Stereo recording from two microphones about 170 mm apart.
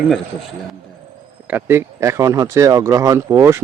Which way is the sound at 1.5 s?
10° right (ahead or behind).